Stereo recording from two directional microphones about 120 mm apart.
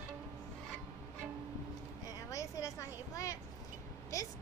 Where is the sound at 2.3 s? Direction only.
25° left (ahead or behind).